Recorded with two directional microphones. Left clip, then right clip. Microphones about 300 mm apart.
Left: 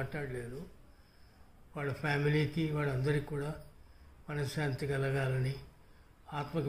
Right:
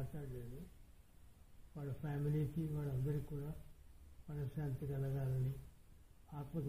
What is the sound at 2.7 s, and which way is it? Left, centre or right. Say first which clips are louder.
A man's voice: left 12 dB; centre.